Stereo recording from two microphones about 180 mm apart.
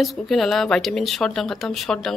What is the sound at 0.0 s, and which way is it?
A woman's voice, centre (ahead or behind).